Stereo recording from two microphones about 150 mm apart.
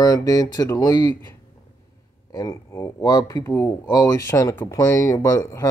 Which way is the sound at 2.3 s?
20° left (ahead or behind).